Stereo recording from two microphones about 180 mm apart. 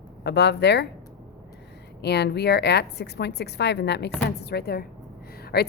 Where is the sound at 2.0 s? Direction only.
65° left (ahead or behind).